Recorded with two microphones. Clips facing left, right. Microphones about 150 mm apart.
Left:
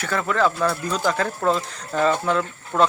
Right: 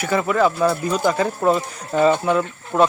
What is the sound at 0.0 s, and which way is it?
Speech, 10° right (ahead or behind).